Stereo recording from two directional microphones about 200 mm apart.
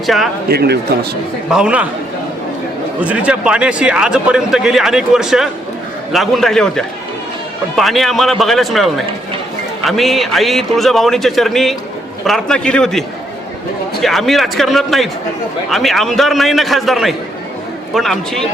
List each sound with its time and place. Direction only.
0.0 s a man's voice: centre (ahead or behind)
0.4 s speech: 50° right (ahead or behind)
1.5 s a man's voice: 5° right (ahead or behind)
3.0 s a man's voice: 5° right (ahead or behind)